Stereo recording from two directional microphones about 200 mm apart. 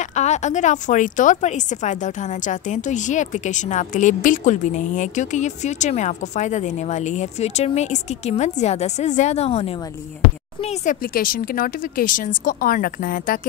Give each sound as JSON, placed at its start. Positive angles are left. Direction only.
{"t": 0.1, "sound": "a woman's voice", "side_deg": 35}
{"t": 11.1, "sound": "a woman's voice", "side_deg": 45}